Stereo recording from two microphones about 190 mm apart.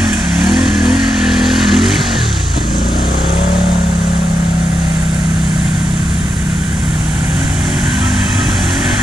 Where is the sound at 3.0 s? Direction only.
55° left (ahead or behind).